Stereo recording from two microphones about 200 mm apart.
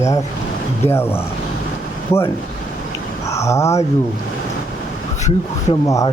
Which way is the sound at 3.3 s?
15° left (ahead or behind).